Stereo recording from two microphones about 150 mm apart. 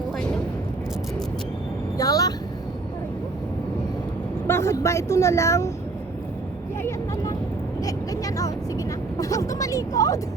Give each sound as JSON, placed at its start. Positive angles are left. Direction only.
{"t": 0.2, "sound": "a sound", "side_deg": 5}
{"t": 2.0, "sound": "vehicle", "side_deg": 25}
{"t": 4.4, "sound": "speech", "side_deg": 15}
{"t": 7.9, "sound": "vehicle", "side_deg": 25}